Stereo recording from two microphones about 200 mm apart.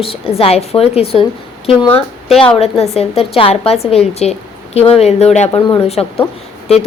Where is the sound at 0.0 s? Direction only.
30° left (ahead or behind).